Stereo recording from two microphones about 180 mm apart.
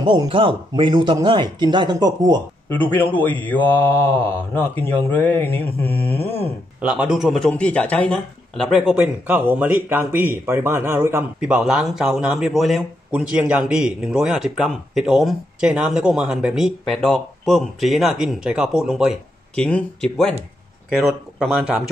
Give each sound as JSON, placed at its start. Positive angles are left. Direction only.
{"t": 0.0, "sound": "speech", "side_deg": -25}
{"t": 2.7, "sound": "speech", "side_deg": 10}
{"t": 6.8, "sound": "speech", "side_deg": -5}
{"t": 8.9, "sound": "speech", "side_deg": -10}